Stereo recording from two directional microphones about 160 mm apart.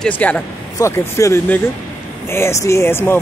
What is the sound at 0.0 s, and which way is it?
Speech, 10° left (ahead or behind).